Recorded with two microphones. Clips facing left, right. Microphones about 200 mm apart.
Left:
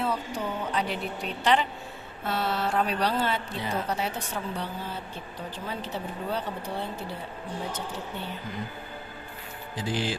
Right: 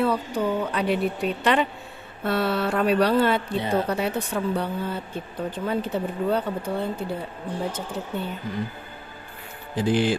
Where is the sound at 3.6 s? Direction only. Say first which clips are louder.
Right 7 dB; 30° right (ahead or behind).